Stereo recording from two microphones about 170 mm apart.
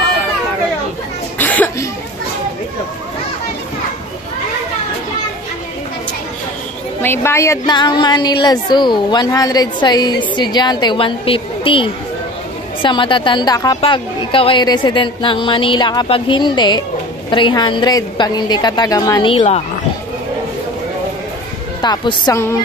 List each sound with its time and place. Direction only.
1.4 s a sound: 10° left (ahead or behind)
7.0 s speech: 15° left (ahead or behind); by 19.6 s 35° left (ahead or behind)
21.8 s speech: 25° left (ahead or behind)